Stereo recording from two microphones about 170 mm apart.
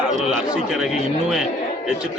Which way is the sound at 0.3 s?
5° right (ahead or behind).